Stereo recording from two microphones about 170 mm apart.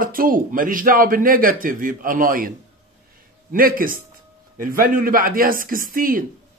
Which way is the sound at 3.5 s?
55° right (ahead or behind).